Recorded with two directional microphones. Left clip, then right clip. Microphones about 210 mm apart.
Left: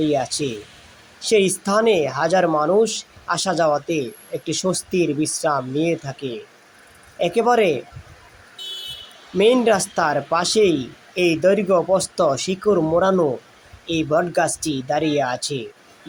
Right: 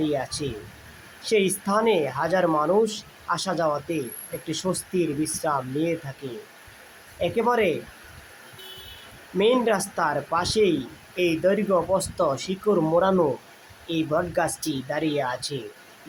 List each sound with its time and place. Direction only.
0.0 s speech: 20° left (ahead or behind)
9.4 s speech: 25° left (ahead or behind)